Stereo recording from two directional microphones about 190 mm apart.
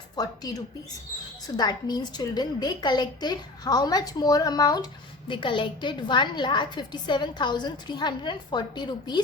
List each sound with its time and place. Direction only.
0.2 s a woman's voice: 20° left (ahead or behind)